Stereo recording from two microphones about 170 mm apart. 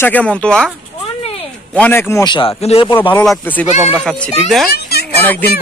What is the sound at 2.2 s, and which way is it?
Speech, 25° left (ahead or behind).